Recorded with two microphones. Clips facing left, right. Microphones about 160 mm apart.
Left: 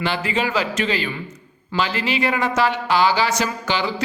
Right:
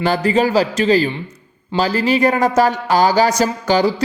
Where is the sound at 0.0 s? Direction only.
40° right (ahead or behind).